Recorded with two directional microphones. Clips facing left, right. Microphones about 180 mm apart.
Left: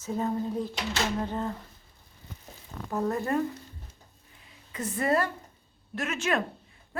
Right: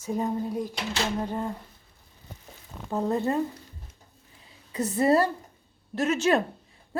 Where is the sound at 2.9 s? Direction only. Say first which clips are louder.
Right 2 dB; 20° right (ahead or behind).